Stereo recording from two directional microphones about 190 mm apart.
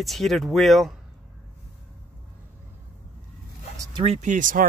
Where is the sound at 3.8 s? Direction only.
20° right (ahead or behind).